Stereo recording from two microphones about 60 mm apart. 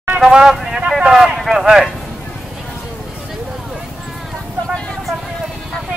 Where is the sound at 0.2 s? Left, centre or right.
Centre.